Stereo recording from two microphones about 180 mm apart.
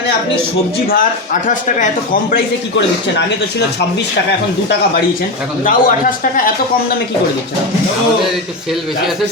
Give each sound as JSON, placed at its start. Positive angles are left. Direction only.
{"t": 0.9, "sound": "speech", "side_deg": 50}
{"t": 2.3, "sound": "speech", "side_deg": 75}
{"t": 5.6, "sound": "speech", "side_deg": 50}